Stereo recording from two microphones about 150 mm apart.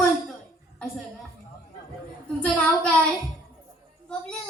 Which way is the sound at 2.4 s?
10° left (ahead or behind).